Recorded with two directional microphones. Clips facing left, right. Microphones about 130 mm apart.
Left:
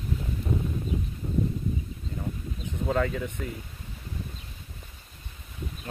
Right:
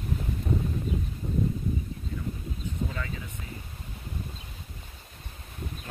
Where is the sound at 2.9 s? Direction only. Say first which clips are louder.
Left 10 dB; 60° left (ahead or behind).